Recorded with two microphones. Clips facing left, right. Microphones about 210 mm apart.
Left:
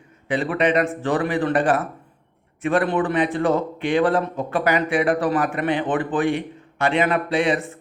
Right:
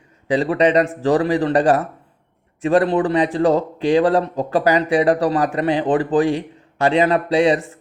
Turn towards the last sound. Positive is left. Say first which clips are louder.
# right 5 dB
turn(degrees=-40)  # may be behind; listen again after turning